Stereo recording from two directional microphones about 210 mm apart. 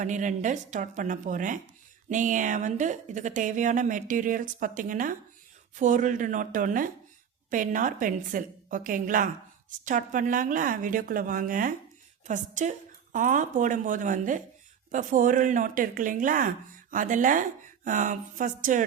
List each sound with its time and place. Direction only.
0.0 s a woman's voice: 35° right (ahead or behind)